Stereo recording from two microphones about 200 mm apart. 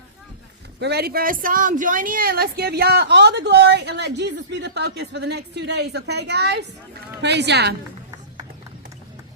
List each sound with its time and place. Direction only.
0.8 s speech: 55° right (ahead or behind)